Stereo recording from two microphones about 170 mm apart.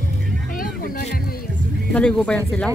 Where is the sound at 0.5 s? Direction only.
55° left (ahead or behind).